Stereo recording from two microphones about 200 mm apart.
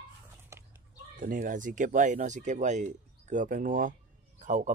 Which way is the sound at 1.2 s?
40° right (ahead or behind).